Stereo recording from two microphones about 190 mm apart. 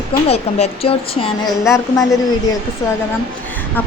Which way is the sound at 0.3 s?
30° left (ahead or behind).